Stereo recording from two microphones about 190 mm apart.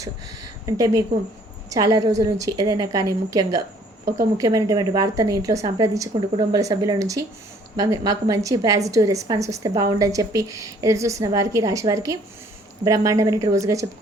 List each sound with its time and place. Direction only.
0.6 s a woman's voice: 15° right (ahead or behind)